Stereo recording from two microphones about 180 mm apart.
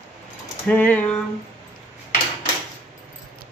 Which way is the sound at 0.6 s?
10° left (ahead or behind).